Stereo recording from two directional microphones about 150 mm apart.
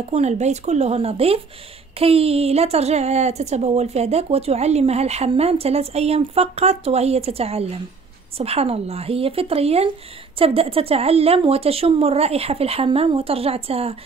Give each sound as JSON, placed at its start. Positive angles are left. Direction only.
{"t": 0.1, "sound": "a woman's voice", "side_deg": -50}